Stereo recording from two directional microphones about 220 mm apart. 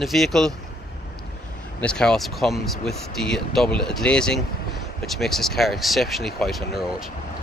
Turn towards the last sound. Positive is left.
turn(degrees=0)  # may be behind; listen again after turning